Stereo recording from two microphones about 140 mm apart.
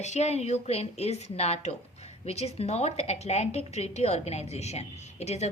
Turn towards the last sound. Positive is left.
turn(degrees=50)  # may be behind; listen again after turning